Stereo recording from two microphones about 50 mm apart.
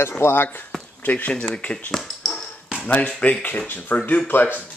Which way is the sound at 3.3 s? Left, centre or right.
Left.